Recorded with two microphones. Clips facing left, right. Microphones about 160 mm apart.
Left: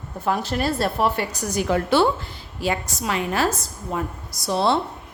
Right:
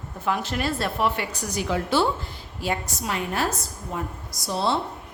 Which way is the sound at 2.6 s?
90° left.